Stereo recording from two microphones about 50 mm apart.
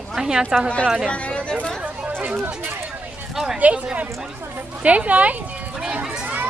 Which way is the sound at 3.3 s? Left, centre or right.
Centre.